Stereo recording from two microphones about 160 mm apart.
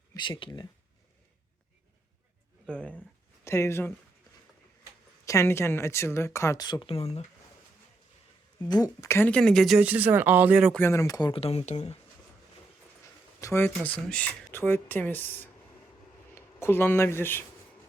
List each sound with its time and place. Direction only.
0.1 s speech: 30° left (ahead or behind)
2.6 s speech: 5° left (ahead or behind)
3.4 s speech: 15° left (ahead or behind)
5.2 s speech: 20° left (ahead or behind); by 7.3 s 40° left (ahead or behind)
8.7 s speech: 20° left (ahead or behind); by 10.7 s 10° right (ahead or behind)
10.7 s speech: 15° left (ahead or behind)
11.3 s speech: 40° left (ahead or behind)
13.4 s a sound: 15° left (ahead or behind)
13.8 s speech: 10° left (ahead or behind)